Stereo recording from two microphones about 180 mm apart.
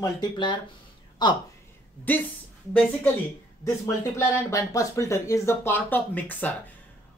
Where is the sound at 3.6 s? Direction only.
15° left (ahead or behind).